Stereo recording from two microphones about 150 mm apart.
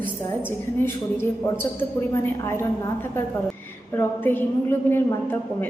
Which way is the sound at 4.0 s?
15° left (ahead or behind).